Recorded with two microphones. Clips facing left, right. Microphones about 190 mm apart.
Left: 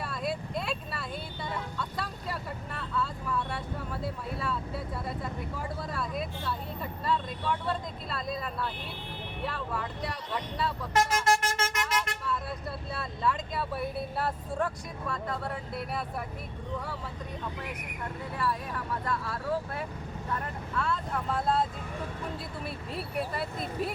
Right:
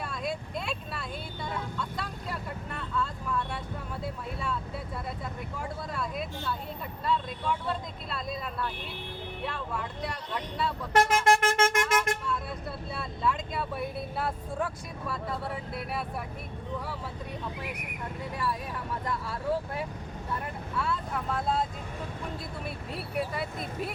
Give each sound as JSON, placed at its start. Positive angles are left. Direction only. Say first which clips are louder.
{"t": 0.0, "sound": "vehicle", "louder": "left 1 dB", "side_deg": 5}
{"t": 4.0, "sound": "speech", "louder": "even", "side_deg": 0}
{"t": 5.9, "sound": "speech", "louder": "even", "side_deg": 0}
{"t": 10.9, "sound": "vehicle", "louder": "right 3 dB", "side_deg": -55}
{"t": 12.9, "sound": "speech", "louder": "even", "side_deg": 0}
{"t": 19.0, "sound": "speech", "louder": "right 3 dB", "side_deg": -15}
{"t": 23.1, "sound": "speech", "louder": "right 1 dB", "side_deg": 0}